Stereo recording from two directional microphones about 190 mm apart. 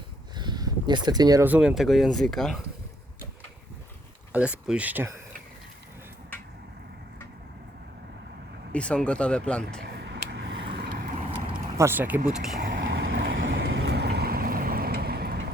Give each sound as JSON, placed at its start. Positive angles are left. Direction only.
{"t": 0.3, "sound": "speech", "side_deg": -20}
{"t": 4.3, "sound": "speech", "side_deg": -5}
{"t": 8.7, "sound": "speech", "side_deg": 5}
{"t": 10.0, "sound": "vehicle", "side_deg": -65}
{"t": 10.8, "sound": "vehicle", "side_deg": -55}
{"t": 11.8, "sound": "speech", "side_deg": -10}
{"t": 12.7, "sound": "boat", "side_deg": -80}